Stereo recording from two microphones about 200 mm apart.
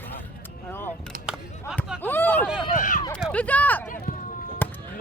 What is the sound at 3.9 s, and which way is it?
Run, 45° left (ahead or behind).